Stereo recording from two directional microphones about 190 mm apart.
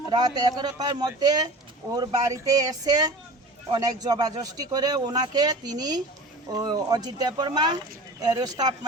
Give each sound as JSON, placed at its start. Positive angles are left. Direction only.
{"t": 0.1, "sound": "speech", "side_deg": -20}